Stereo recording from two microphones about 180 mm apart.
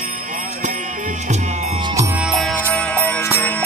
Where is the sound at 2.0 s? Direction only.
5° right (ahead or behind); by 3.6 s 10° left (ahead or behind).